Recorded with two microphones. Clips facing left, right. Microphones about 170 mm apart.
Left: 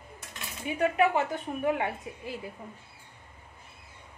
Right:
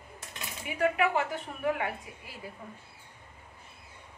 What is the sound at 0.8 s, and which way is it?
A woman's voice, 20° left (ahead or behind).